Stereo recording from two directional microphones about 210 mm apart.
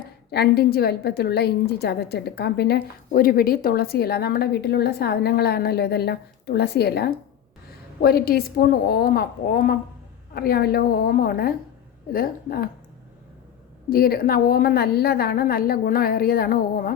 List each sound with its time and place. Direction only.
0.3 s a woman's voice: 50° left (ahead or behind)
13.9 s a woman's voice: 45° left (ahead or behind)